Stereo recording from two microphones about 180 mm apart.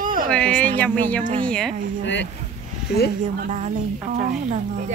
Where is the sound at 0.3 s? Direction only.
5° left (ahead or behind).